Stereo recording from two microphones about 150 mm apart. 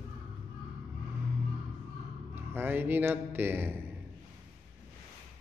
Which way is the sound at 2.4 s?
15° right (ahead or behind).